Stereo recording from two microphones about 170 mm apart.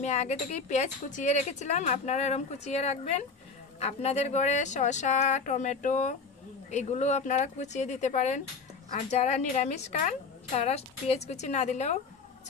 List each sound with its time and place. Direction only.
0.0 s a woman's voice: 40° left (ahead or behind)